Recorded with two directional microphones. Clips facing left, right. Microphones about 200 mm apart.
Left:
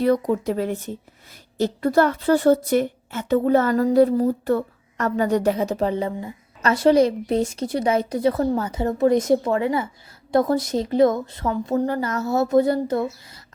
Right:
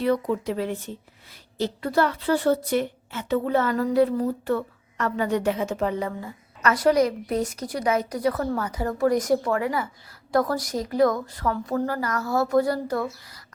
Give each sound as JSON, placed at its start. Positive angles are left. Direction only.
{"t": 0.0, "sound": "a woman's voice", "side_deg": 40}